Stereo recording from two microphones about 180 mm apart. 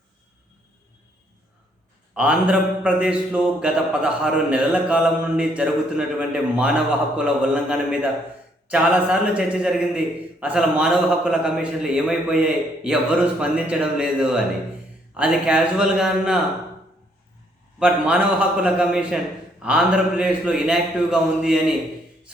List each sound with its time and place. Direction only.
2.1 s a man's voice: 5° right (ahead or behind)
17.7 s a man's voice: 5° right (ahead or behind)